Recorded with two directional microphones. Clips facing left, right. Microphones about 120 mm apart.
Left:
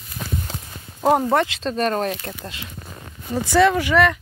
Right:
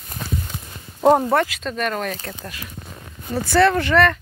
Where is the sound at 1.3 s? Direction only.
25° left (ahead or behind).